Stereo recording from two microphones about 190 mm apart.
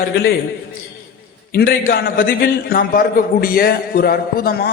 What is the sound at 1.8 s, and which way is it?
A man's voice, 50° left (ahead or behind).